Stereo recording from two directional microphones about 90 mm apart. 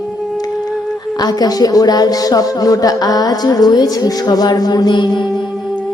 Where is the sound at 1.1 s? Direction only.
45° left (ahead or behind).